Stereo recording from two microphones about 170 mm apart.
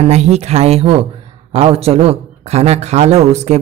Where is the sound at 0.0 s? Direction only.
40° right (ahead or behind).